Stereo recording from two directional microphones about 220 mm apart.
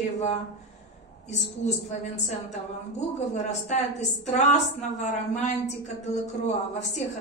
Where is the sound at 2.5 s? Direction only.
30° left (ahead or behind).